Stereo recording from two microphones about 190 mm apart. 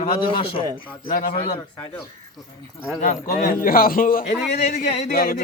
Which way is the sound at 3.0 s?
45° left (ahead or behind).